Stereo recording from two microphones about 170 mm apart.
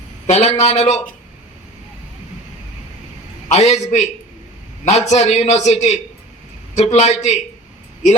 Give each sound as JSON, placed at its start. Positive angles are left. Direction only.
{"t": 0.3, "sound": "a man's voice", "side_deg": 40}
{"t": 3.5, "sound": "a man's voice", "side_deg": 40}